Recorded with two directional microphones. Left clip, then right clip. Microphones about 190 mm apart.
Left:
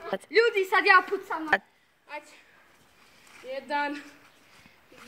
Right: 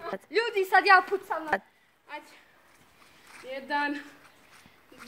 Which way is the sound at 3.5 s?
45° right (ahead or behind).